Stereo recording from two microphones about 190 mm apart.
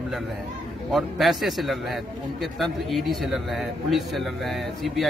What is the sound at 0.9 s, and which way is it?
A man's voice, centre (ahead or behind).